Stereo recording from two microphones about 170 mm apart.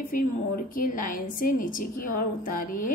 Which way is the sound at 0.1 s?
55° left (ahead or behind).